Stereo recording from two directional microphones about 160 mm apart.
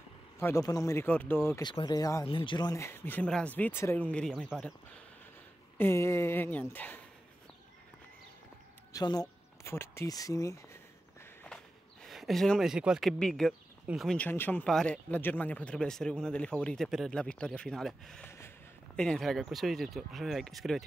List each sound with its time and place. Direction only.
0.4 s speech: 20° left (ahead or behind)
1.6 s speech: 30° left (ahead or behind); by 4.7 s 5° left (ahead or behind)
5.8 s speech: 15° left (ahead or behind)
8.9 s speech: 25° left (ahead or behind)
11.4 s speech: centre (ahead or behind)
18.2 s a sound: 15° left (ahead or behind)
18.9 s speech: 5° left (ahead or behind)